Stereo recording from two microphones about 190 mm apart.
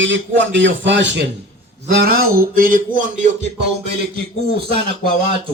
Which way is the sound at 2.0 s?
50° right (ahead or behind).